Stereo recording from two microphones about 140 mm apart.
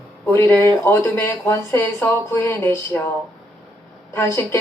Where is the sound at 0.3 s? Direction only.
15° left (ahead or behind).